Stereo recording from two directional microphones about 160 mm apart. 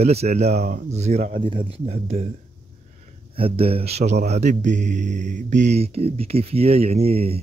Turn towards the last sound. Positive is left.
turn(degrees=-40)  # may be behind; listen again after turning